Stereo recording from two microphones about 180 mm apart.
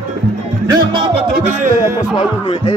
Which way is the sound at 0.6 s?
25° right (ahead or behind).